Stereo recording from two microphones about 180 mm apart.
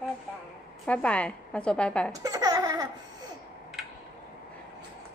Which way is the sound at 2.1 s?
20° right (ahead or behind).